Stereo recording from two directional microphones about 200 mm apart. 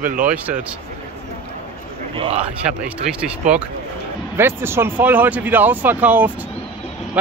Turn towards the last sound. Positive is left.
turn(degrees=-10)  # may be behind; listen again after turning